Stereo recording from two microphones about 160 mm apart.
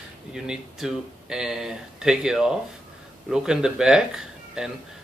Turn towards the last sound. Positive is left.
turn(degrees=-5)  # may be behind; listen again after turning